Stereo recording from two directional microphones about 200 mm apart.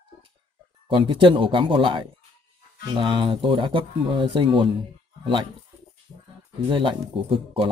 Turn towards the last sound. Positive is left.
turn(degrees=-25)  # may be behind; listen again after turning